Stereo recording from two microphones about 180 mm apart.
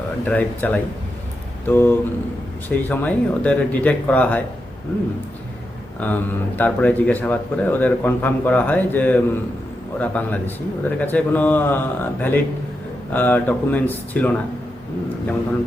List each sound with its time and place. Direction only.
0.3 s speech: 10° left (ahead or behind)
6.0 s speech: 10° left (ahead or behind)